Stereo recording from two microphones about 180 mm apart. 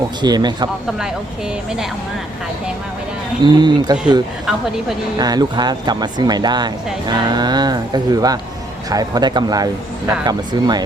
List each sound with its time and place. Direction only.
0.2 s speech: 25° right (ahead or behind)
3.4 s speech: 25° right (ahead or behind)
5.1 s speech: 20° right (ahead or behind)